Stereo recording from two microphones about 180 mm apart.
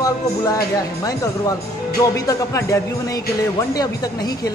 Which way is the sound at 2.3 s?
20° left (ahead or behind).